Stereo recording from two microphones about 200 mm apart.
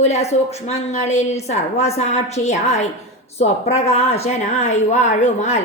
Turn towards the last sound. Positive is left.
turn(degrees=35)  # may be behind; listen again after turning